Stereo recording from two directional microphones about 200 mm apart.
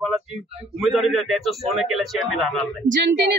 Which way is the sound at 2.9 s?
55° right (ahead or behind).